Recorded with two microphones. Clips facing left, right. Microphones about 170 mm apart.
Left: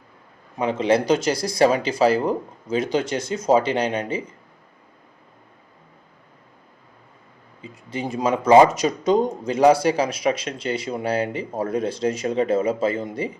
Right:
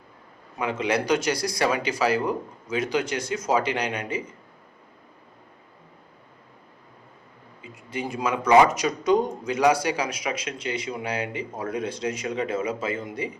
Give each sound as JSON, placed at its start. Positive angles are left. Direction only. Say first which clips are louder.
{"t": 0.6, "sound": "speech", "louder": "left 6 dB", "side_deg": 30}
{"t": 7.9, "sound": "a man's voice", "louder": "left 4 dB", "side_deg": 25}